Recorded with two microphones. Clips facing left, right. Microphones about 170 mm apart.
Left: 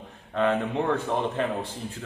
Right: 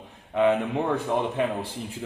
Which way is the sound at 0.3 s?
15° right (ahead or behind).